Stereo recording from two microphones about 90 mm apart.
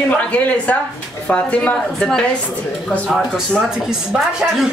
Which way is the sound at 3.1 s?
5° right (ahead or behind).